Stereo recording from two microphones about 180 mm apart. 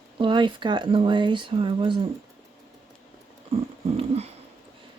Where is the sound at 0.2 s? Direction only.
25° right (ahead or behind).